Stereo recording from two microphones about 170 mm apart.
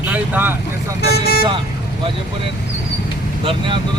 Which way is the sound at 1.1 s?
65° left (ahead or behind).